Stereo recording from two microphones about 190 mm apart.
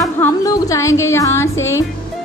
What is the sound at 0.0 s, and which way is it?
Music, 15° left (ahead or behind).